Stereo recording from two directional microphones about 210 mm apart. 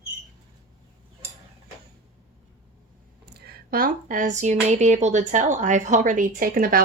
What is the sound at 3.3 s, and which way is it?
Speech, 50° right (ahead or behind).